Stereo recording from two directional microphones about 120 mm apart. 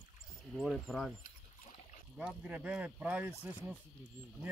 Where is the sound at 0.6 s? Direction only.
Centre (ahead or behind).